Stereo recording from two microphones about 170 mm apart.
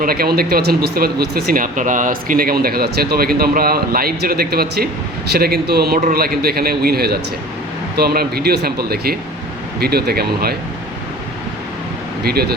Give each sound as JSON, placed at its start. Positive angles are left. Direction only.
{"t": 0.0, "sound": "speech", "side_deg": -60}
{"t": 12.2, "sound": "speech", "side_deg": -65}